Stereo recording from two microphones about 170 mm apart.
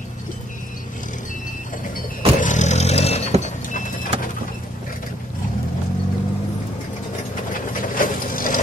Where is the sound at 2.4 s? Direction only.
45° left (ahead or behind).